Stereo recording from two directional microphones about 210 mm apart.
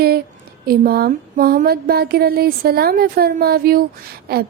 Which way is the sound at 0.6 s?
45° right (ahead or behind).